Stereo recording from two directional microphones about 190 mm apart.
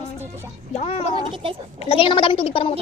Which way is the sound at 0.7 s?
30° left (ahead or behind).